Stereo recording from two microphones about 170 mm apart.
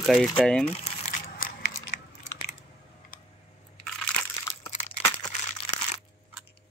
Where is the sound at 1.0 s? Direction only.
55° left (ahead or behind).